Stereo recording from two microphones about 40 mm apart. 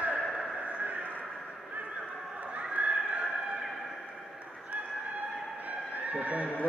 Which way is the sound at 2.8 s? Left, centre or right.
Right.